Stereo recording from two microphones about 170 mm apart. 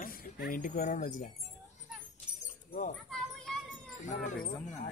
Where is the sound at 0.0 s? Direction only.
55° left (ahead or behind).